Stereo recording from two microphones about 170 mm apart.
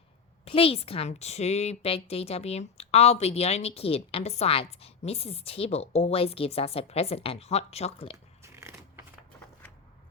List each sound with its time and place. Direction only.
0.4 s a woman's voice: 35° left (ahead or behind)
8.1 s crumpling: 15° right (ahead or behind)